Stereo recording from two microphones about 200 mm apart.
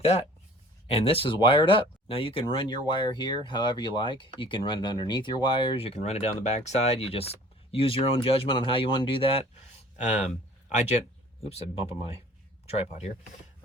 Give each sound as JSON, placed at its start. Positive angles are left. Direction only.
{"t": 0.0, "sound": "speech", "side_deg": 30}